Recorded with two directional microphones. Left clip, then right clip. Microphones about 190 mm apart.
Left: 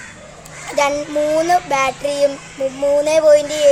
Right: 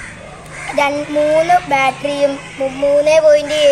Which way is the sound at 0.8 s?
90° left.